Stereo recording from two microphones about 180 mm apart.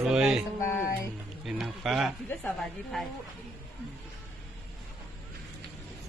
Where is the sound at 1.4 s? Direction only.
Centre (ahead or behind).